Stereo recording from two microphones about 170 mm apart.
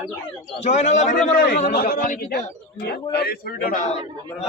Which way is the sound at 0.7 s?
45° left (ahead or behind).